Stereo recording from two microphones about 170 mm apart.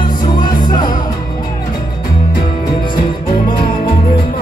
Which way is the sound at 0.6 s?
25° left (ahead or behind).